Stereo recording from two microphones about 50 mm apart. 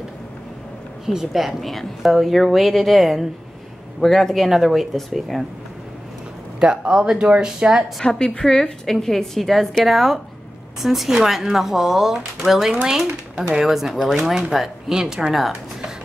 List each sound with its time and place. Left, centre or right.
1.0 s a woman's voice: centre
6.6 s speech: centre
8.0 s a woman's voice: centre